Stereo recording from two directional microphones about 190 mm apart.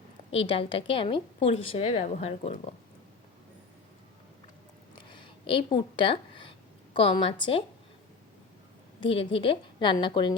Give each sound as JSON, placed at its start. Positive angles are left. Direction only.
{"t": 0.3, "sound": "a woman's voice", "side_deg": 30}
{"t": 5.0, "sound": "a woman's voice", "side_deg": 25}
{"t": 9.0, "sound": "a woman's voice", "side_deg": 30}